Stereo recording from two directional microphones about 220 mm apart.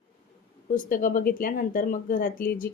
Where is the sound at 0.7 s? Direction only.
40° left (ahead or behind).